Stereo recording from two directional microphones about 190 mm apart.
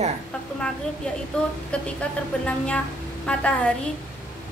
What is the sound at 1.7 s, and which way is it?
A woman's voice, 5° left (ahead or behind).